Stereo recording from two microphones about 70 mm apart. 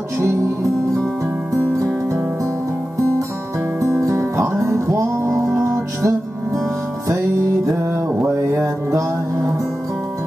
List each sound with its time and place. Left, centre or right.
3.8 s music: right
8.2 s music: right